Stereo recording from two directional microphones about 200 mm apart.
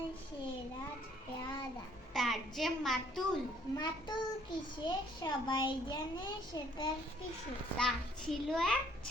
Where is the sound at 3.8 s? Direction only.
20° left (ahead or behind).